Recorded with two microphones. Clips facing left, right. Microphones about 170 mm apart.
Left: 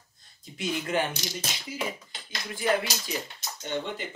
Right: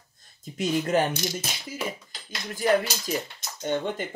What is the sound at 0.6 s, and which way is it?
Speech, 40° right (ahead or behind).